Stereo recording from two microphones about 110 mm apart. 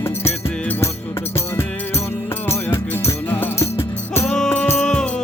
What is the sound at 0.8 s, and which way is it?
Music, 25° left (ahead or behind).